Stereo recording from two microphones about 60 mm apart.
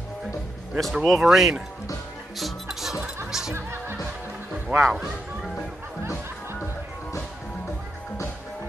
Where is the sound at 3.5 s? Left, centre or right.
Right.